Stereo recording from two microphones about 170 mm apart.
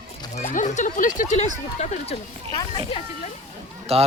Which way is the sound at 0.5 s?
45° left (ahead or behind).